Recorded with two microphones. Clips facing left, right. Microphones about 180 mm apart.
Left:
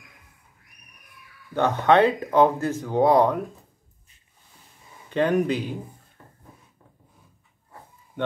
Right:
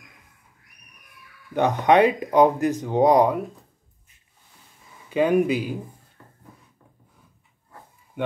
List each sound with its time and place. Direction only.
1.5 s speech: 15° right (ahead or behind)
5.1 s speech: 10° right (ahead or behind)
6.2 s a sound: 20° left (ahead or behind)